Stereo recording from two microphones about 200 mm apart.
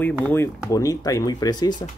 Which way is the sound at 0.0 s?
10° left (ahead or behind).